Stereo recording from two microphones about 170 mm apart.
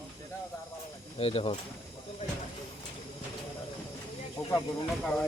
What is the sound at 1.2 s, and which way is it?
Speech, 35° left (ahead or behind).